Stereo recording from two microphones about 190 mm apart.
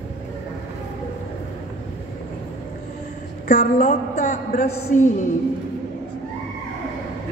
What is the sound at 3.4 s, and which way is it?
A woman's voice, 40° left (ahead or behind).